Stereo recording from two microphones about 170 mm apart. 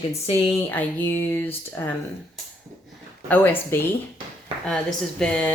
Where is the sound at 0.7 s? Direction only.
10° left (ahead or behind).